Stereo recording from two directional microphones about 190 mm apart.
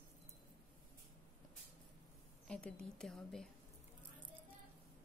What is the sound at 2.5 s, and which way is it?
Speech, 5° left (ahead or behind).